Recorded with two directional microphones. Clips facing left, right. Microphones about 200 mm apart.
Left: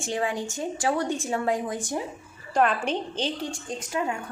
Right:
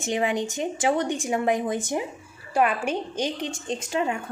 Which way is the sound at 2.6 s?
10° right (ahead or behind).